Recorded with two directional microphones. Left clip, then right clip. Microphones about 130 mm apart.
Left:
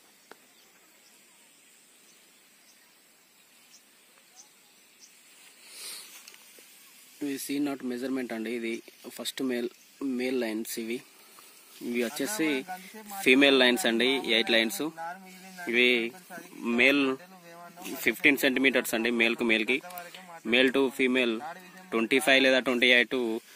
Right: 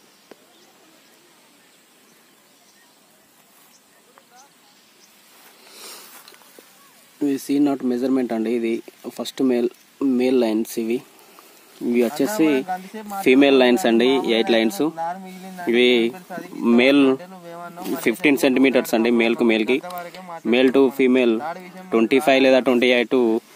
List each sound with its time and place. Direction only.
7.2 s speech: centre (ahead or behind)
15.0 s speech: 25° right (ahead or behind)
15.5 s speech: 10° right (ahead or behind)
16.3 s speech: centre (ahead or behind)
16.6 s speech: 20° right (ahead or behind)
17.3 s a sound: 5° left (ahead or behind)
18.2 s speech: 5° right (ahead or behind)
20.1 s a sound: centre (ahead or behind)
20.4 s speech: centre (ahead or behind)